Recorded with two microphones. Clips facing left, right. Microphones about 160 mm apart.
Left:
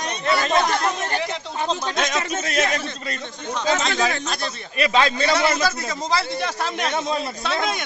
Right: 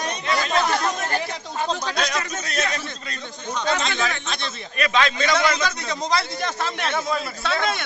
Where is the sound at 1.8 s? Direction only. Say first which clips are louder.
Left 2 dB; 25° left (ahead or behind).